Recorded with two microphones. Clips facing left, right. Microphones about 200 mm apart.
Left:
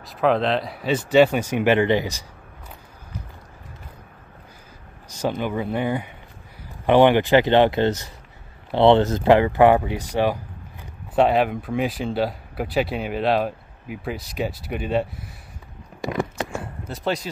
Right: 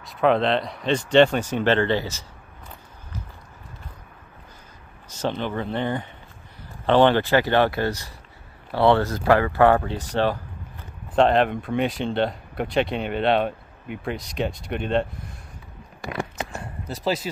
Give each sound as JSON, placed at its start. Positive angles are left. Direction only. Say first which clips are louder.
{"t": 0.0, "sound": "speech", "louder": "even", "side_deg": 0}
{"t": 5.4, "sound": "speech", "louder": "left 2 dB", "side_deg": 10}
{"t": 16.9, "sound": "speech", "louder": "even", "side_deg": -5}